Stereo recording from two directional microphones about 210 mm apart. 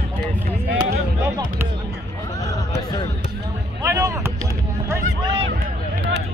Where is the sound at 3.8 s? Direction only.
15° right (ahead or behind).